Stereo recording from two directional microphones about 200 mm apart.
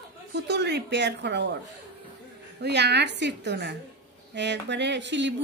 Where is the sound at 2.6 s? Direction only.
55° right (ahead or behind).